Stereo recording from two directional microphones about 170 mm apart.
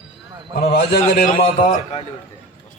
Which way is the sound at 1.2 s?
55° left (ahead or behind).